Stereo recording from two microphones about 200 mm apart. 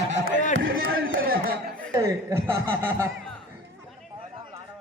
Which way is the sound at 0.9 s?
80° right.